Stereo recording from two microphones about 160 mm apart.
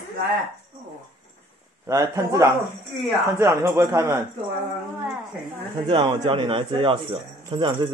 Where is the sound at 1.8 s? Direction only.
20° right (ahead or behind).